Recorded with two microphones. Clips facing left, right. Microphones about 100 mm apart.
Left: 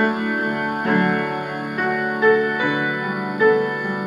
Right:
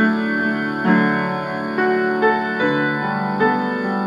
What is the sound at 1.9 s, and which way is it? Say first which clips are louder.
Music: left 1 dB; 15° right (ahead or behind).